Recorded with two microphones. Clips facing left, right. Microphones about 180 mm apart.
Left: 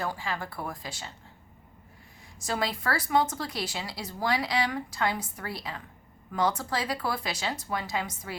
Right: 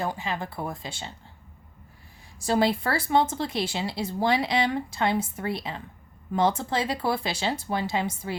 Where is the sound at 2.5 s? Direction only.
30° right (ahead or behind).